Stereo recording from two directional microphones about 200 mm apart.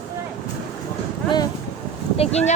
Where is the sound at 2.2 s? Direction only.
30° left (ahead or behind).